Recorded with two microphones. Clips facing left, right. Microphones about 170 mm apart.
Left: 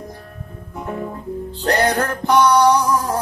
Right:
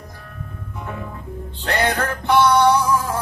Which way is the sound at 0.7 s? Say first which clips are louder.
Left 6 dB; 35° left (ahead or behind).